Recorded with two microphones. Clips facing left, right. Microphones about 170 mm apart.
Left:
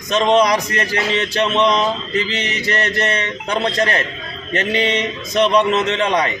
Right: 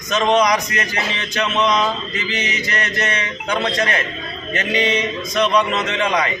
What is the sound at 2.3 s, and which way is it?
A man's voice, 35° left (ahead or behind).